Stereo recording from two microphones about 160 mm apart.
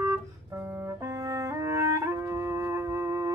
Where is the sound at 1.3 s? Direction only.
20° right (ahead or behind).